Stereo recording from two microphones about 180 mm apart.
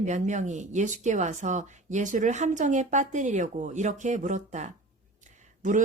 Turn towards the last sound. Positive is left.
turn(degrees=-45)  # may be behind; listen again after turning